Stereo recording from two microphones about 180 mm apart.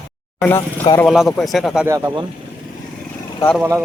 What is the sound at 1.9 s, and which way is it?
Speech, 20° right (ahead or behind).